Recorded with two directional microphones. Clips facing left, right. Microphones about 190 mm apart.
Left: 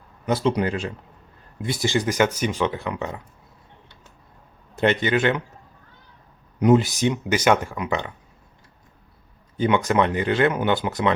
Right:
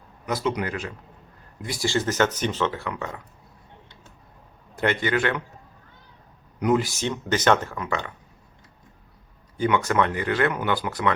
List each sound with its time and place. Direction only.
0.3 s speech: 30° left (ahead or behind)
4.7 s speech: 20° left (ahead or behind)
6.6 s speech: 25° left (ahead or behind)
9.6 s speech: 20° left (ahead or behind)